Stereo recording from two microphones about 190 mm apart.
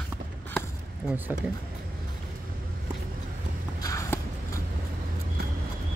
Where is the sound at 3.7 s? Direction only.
15° left (ahead or behind).